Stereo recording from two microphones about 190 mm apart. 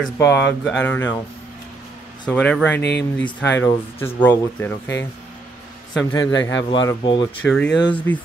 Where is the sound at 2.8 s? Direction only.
60° left (ahead or behind).